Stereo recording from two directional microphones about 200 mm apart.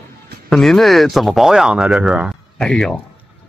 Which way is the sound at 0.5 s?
Centre (ahead or behind).